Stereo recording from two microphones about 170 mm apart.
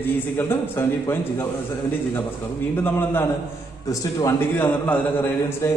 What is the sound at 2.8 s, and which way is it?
A man's voice, 15° left (ahead or behind).